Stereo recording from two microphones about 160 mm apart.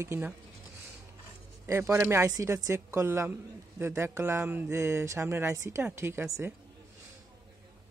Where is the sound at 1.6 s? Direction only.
15° right (ahead or behind).